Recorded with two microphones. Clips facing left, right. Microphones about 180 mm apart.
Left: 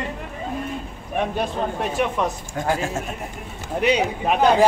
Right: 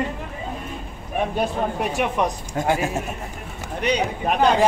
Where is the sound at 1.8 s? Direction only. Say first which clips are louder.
Even; 15° right (ahead or behind).